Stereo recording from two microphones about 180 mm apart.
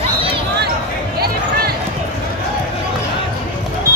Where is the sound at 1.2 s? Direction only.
60° right (ahead or behind).